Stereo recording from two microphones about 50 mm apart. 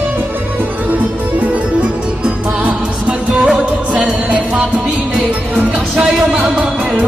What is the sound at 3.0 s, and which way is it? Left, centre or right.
Music, right.